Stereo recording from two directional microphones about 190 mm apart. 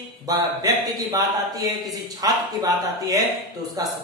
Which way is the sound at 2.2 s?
20° right (ahead or behind).